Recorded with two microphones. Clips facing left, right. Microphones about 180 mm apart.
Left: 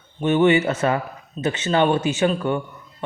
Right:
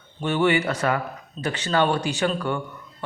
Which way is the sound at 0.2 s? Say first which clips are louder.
Left 5 dB; 20° left (ahead or behind).